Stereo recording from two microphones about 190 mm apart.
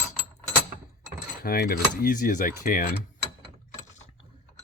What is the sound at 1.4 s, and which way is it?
Speech, 50° left (ahead or behind).